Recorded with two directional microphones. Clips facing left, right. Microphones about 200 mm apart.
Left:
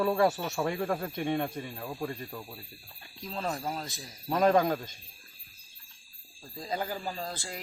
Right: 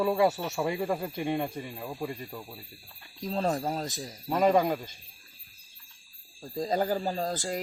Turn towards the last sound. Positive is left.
turn(degrees=-40)  # may be behind; listen again after turning